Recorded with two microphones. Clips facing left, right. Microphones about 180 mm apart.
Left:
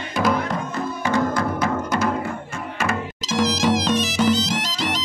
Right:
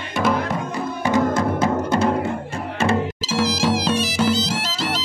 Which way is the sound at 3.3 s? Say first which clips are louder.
Left 2 dB; 10° right (ahead or behind).